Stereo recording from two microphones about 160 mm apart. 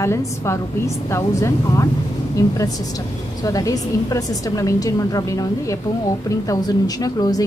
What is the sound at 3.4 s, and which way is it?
A woman's voice, 20° left (ahead or behind).